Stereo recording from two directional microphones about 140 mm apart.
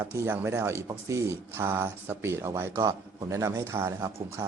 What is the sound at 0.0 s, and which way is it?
A man's voice, 15° right (ahead or behind).